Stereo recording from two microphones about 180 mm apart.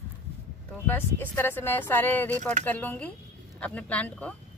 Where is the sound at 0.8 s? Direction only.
10° left (ahead or behind).